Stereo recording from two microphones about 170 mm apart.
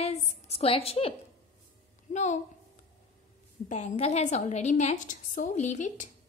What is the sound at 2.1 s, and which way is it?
Speech, 45° left (ahead or behind).